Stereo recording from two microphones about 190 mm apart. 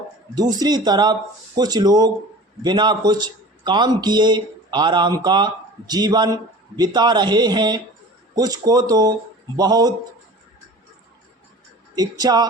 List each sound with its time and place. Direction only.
0.3 s a man's voice: 20° right (ahead or behind)
11.9 s a man's voice: 20° right (ahead or behind)